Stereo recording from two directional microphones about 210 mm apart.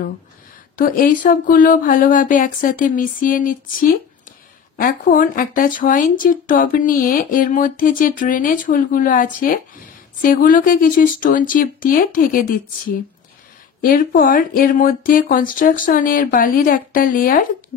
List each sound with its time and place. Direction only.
0.7 s speech: 40° left (ahead or behind)
13.7 s speech: 45° left (ahead or behind)